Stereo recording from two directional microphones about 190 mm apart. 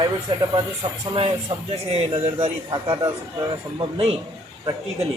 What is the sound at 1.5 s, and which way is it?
A man's voice, 35° right (ahead or behind).